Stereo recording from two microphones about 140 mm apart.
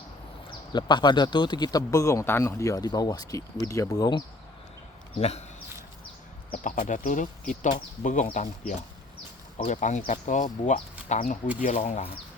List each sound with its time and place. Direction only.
0.7 s speech: 30° left (ahead or behind)
5.1 s speech: 45° left (ahead or behind)
6.6 s speech: 65° left (ahead or behind); by 12.1 s 50° left (ahead or behind)